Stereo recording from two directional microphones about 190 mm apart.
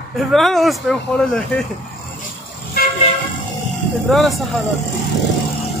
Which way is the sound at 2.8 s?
55° left (ahead or behind).